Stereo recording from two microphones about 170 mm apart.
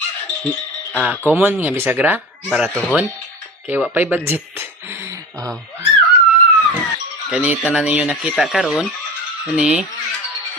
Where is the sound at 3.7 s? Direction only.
10° right (ahead or behind).